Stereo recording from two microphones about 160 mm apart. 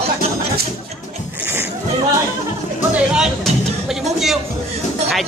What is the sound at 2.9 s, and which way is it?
Speech, 5° right (ahead or behind).